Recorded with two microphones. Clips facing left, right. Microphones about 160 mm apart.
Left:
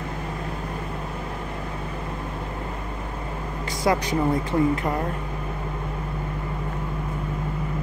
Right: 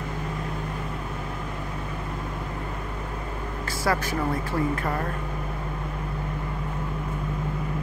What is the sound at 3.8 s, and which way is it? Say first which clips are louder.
Speech: left 4 dB; 20° left (ahead or behind).